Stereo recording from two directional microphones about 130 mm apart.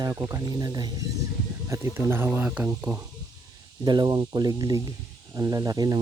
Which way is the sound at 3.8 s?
30° right (ahead or behind).